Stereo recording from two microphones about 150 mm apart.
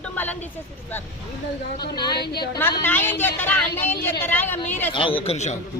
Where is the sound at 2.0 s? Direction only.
30° left (ahead or behind).